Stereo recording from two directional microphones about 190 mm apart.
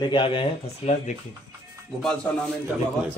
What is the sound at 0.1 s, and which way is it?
Speech, 25° left (ahead or behind).